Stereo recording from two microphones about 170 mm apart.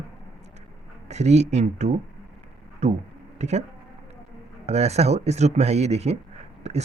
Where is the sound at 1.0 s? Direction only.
40° right (ahead or behind).